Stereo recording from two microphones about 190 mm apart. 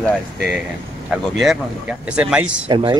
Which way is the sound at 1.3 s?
5° right (ahead or behind).